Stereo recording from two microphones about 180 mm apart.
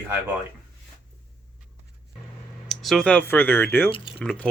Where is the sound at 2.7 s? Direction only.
Centre (ahead or behind).